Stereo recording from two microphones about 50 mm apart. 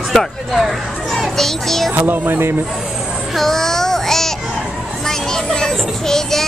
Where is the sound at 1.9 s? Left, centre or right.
Right.